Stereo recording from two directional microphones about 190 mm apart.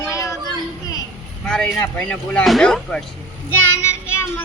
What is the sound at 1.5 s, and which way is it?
Speech, 5° left (ahead or behind).